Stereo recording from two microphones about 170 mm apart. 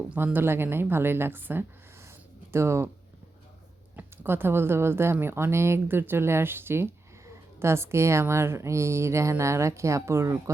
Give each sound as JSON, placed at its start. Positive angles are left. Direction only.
{"t": 0.1, "sound": "speech", "side_deg": -10}
{"t": 3.9, "sound": "speech", "side_deg": -10}